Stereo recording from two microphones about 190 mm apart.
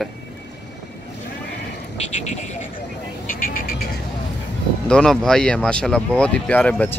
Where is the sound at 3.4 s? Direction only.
45° left (ahead or behind).